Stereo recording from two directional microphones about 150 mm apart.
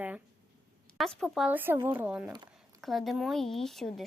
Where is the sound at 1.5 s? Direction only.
15° right (ahead or behind).